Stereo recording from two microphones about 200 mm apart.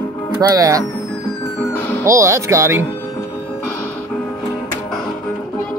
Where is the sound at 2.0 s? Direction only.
15° right (ahead or behind).